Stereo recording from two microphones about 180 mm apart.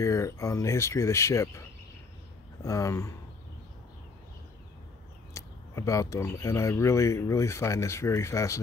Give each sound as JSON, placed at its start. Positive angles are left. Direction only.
{"t": 0.0, "sound": "speech", "side_deg": 15}
{"t": 2.6, "sound": "speech", "side_deg": 15}
{"t": 5.3, "sound": "speech", "side_deg": 15}